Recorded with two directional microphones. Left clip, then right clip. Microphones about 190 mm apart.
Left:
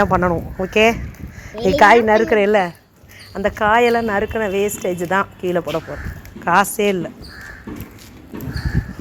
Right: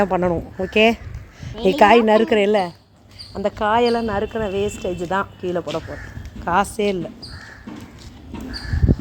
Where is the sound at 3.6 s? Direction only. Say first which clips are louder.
Left 3 dB; 30° left (ahead or behind).